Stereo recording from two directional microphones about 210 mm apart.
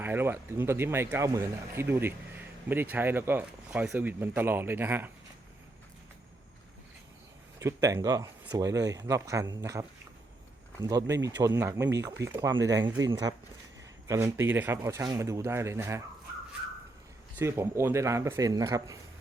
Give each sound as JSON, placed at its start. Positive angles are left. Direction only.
{"t": 0.0, "sound": "speech", "side_deg": -10}
{"t": 7.6, "sound": "speech", "side_deg": -15}
{"t": 17.3, "sound": "speech", "side_deg": -10}